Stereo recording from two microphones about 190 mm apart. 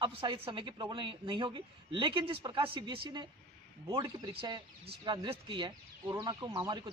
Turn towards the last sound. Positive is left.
turn(degrees=-20)  # may be behind; listen again after turning